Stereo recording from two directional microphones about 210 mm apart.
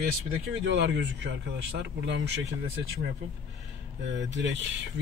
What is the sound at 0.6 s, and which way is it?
Speech, 55° right (ahead or behind).